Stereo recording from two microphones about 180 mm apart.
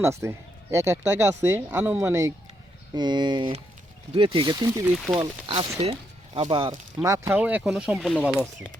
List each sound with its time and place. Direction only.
0.0 s speech: 15° right (ahead or behind)
5.8 s speech: 30° right (ahead or behind); by 8.4 s 5° right (ahead or behind)